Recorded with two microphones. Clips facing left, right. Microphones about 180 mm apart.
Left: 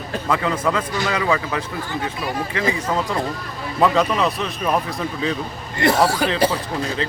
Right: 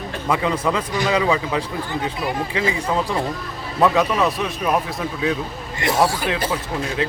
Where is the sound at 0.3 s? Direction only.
15° right (ahead or behind).